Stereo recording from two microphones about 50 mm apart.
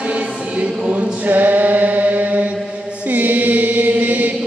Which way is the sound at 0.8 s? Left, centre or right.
Right.